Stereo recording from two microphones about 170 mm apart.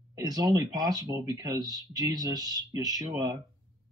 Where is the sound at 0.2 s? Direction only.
20° right (ahead or behind).